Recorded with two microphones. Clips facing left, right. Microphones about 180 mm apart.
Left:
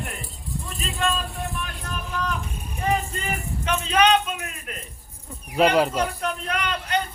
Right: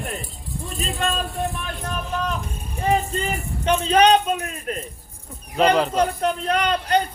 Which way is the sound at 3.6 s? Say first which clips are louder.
Right 4 dB; 35° right (ahead or behind).